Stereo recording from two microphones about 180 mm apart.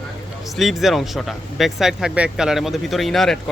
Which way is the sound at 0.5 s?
Centre (ahead or behind).